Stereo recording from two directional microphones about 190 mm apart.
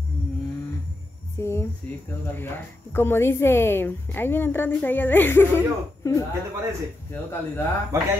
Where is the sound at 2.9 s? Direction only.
10° left (ahead or behind).